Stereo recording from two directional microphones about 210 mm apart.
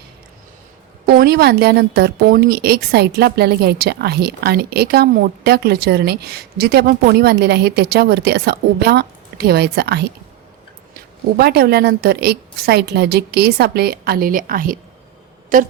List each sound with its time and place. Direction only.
1.0 s a woman's voice: 45° right (ahead or behind)
11.3 s a woman's voice: 50° right (ahead or behind)